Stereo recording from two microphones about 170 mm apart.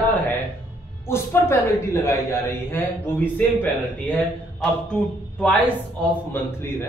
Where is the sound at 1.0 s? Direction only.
15° left (ahead or behind).